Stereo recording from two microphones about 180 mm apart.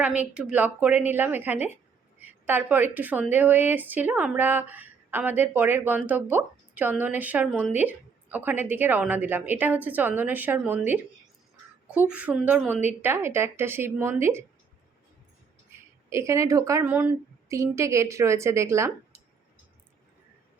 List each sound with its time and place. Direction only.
0.0 s a woman's voice: 10° right (ahead or behind)
16.0 s a woman's voice: 15° right (ahead or behind)